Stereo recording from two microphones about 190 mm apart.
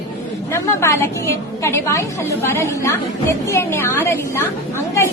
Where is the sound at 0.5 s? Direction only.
15° left (ahead or behind).